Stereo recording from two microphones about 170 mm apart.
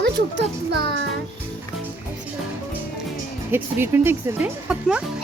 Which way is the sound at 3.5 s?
15° right (ahead or behind).